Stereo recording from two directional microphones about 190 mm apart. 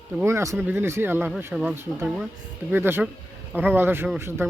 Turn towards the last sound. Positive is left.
turn(degrees=-10)  # may be behind; listen again after turning